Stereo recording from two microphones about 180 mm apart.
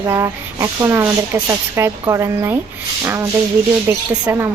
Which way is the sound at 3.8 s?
15° right (ahead or behind).